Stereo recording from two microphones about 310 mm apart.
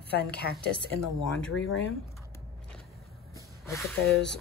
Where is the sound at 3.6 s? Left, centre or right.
Centre.